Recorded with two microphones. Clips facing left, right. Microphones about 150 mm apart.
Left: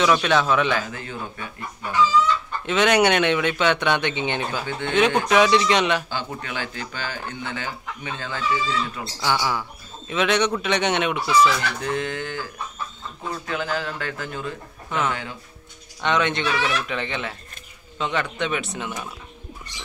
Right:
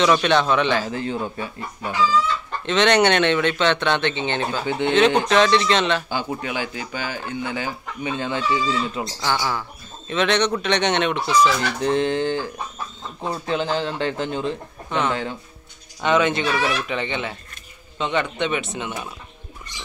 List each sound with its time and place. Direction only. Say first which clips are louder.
0.0 s speech: right 2 dB; centre (ahead or behind)
0.8 s a man's voice: right 7 dB; 30° right (ahead or behind)
2.6 s speech: right 1 dB; 10° left (ahead or behind)
4.6 s speech: right 6 dB; 15° right (ahead or behind)
5.3 s speech: even; 10° left (ahead or behind)
6.0 s speech: right 4 dB; 15° right (ahead or behind)
9.2 s speech: left 1 dB; 5° left (ahead or behind)
11.4 s a man's voice: right 2 dB; 30° right (ahead or behind)
16.0 s speech: right 3 dB; 5° right (ahead or behind)